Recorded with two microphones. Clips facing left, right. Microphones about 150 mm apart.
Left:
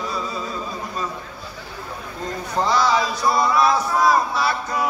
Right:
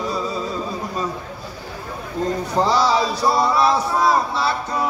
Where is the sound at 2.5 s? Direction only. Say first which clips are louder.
Right 1 dB; 35° right (ahead or behind).